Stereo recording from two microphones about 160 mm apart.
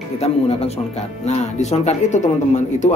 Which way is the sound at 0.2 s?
40° left (ahead or behind).